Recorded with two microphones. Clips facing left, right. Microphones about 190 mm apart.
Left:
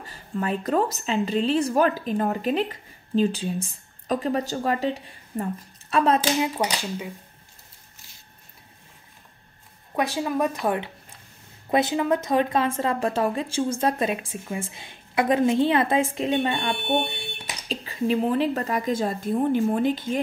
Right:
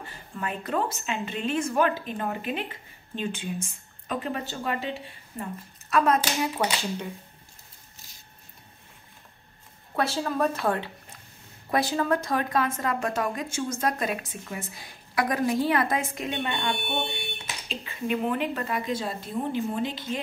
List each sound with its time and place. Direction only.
0.0 s a woman's voice: 40° left (ahead or behind)
9.9 s a woman's voice: 15° left (ahead or behind); by 20.2 s 50° left (ahead or behind)